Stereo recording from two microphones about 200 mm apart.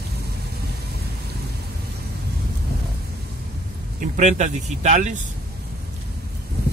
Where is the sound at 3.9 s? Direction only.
35° right (ahead or behind).